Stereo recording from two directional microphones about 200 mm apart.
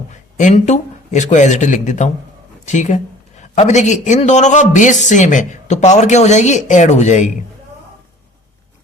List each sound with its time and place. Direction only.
0.1 s speech: 35° left (ahead or behind)